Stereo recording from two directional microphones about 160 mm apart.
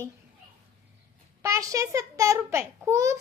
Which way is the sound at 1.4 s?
20° right (ahead or behind).